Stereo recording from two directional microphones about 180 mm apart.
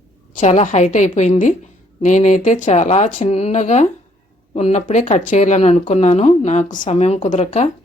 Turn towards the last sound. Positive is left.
turn(degrees=40)  # may be behind; listen again after turning